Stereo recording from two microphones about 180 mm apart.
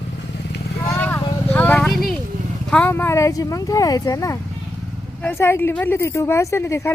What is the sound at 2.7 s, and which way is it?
Speech, 10° left (ahead or behind).